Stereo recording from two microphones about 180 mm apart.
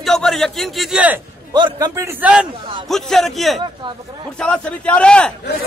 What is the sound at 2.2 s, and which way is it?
A man's voice, 5° right (ahead or behind).